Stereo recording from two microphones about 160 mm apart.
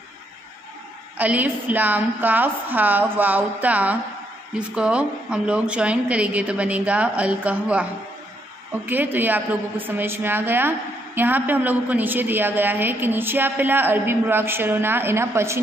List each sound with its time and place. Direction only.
1.1 s a woman's voice: 10° right (ahead or behind)
8.8 s a woman's voice: 10° right (ahead or behind)